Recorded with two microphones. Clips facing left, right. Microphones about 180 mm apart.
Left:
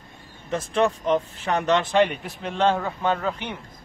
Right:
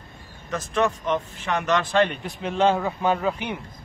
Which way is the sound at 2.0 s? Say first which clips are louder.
Right 2 dB; centre (ahead or behind).